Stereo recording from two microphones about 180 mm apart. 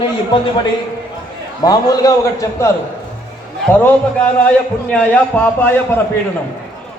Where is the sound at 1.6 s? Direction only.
20° left (ahead or behind).